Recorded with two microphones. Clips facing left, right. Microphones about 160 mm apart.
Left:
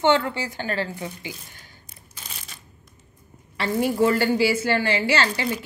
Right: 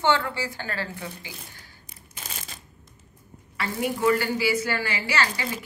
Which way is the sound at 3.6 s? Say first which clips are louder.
Left 5 dB; 30° left (ahead or behind).